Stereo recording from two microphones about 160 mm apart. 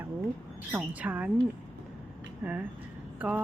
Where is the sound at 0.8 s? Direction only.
10° right (ahead or behind).